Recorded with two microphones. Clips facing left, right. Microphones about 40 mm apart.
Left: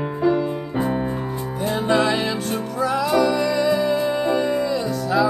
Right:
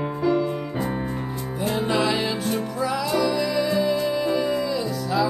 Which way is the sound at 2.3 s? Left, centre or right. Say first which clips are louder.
Left 1 dB; centre.